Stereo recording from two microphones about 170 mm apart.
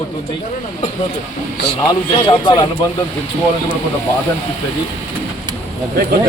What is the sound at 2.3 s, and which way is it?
Speech, 25° left (ahead or behind).